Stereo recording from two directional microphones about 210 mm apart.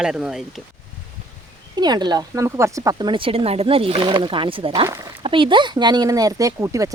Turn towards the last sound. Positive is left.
turn(degrees=-15)  # may be behind; listen again after turning